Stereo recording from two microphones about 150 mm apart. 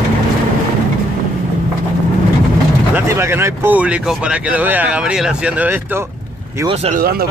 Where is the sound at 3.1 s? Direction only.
15° right (ahead or behind).